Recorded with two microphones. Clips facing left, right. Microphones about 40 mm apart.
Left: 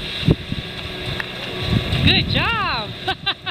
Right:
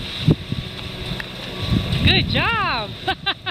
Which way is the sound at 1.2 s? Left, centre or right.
Centre.